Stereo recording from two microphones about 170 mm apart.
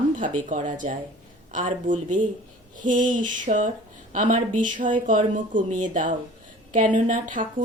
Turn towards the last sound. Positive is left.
turn(degrees=-50)  # may be behind; listen again after turning